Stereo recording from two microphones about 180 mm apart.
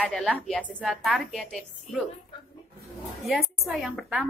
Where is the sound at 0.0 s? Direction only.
5° left (ahead or behind).